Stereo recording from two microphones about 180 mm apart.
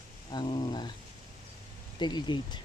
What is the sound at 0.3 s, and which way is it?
Speech, 25° left (ahead or behind).